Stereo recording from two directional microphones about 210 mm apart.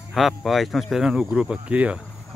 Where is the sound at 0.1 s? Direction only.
Centre (ahead or behind).